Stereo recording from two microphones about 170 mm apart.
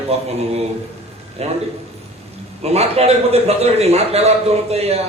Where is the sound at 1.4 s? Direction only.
40° right (ahead or behind).